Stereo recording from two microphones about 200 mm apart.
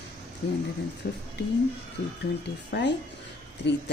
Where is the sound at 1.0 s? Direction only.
60° left (ahead or behind).